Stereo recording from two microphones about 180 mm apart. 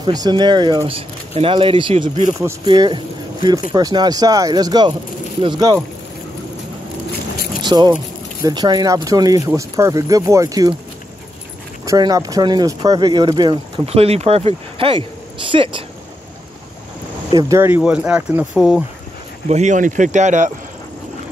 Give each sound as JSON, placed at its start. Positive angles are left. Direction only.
{"t": 0.0, "sound": "speech", "side_deg": -25}
{"t": 7.6, "sound": "speech", "side_deg": -25}
{"t": 11.8, "sound": "speech", "side_deg": -20}
{"t": 13.8, "sound": "speech", "side_deg": -35}
{"t": 17.3, "sound": "speech", "side_deg": -20}
{"t": 19.4, "sound": "speech", "side_deg": -40}